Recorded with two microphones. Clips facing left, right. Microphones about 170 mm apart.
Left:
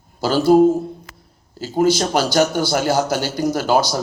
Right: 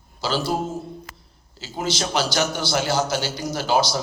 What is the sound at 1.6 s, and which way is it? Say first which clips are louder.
A man's voice: left 10 dB; 50° left (ahead or behind).